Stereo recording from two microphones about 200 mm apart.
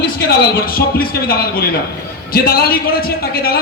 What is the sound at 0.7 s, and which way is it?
A man's voice, 45° left (ahead or behind).